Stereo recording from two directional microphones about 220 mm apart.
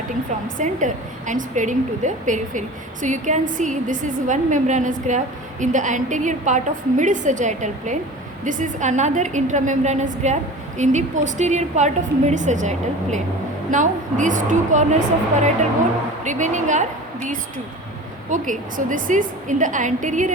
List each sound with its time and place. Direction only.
0.6 s a woman's voice: 35° right (ahead or behind)
18.3 s a woman's voice: 35° right (ahead or behind)